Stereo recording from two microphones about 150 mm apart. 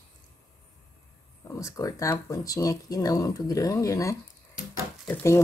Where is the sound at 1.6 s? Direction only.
20° left (ahead or behind).